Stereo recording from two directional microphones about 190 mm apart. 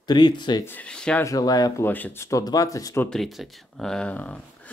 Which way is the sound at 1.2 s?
20° left (ahead or behind).